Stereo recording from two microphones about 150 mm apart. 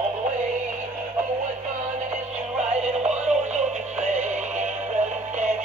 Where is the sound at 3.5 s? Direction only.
50° right (ahead or behind).